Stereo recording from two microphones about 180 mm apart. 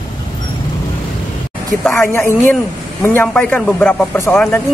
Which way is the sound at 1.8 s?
15° left (ahead or behind).